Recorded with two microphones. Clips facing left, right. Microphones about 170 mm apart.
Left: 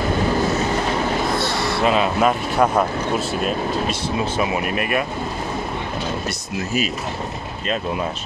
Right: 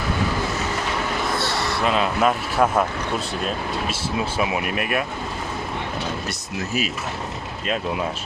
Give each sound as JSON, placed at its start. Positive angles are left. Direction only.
{"t": 1.9, "sound": "speech", "side_deg": 0}
{"t": 4.4, "sound": "speech", "side_deg": -5}
{"t": 7.6, "sound": "speech", "side_deg": -5}